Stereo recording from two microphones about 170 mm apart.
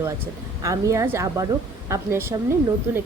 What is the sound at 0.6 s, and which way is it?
A woman's voice, 20° right (ahead or behind).